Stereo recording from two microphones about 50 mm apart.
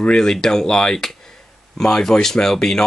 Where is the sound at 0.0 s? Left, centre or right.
Centre.